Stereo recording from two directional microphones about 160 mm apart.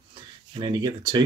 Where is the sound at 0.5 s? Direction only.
30° right (ahead or behind).